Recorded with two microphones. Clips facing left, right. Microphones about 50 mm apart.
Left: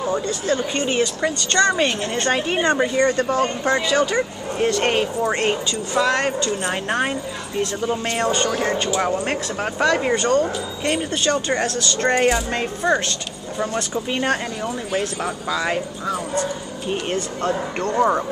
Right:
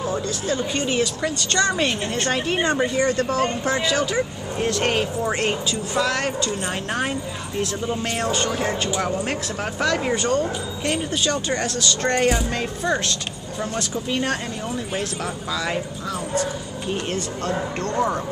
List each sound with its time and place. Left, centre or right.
0.0 s a woman's voice: centre
8.2 s a woman's voice: centre
9.0 s speech: centre
10.1 s a woman's voice: centre
10.9 s speech: centre
14.1 s speech: centre
15.5 s speech: centre